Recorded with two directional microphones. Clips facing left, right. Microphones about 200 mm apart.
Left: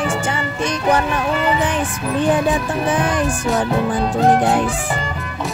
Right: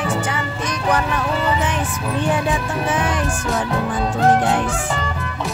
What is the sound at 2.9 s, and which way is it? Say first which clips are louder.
Music: left 2 dB; 35° left (ahead or behind).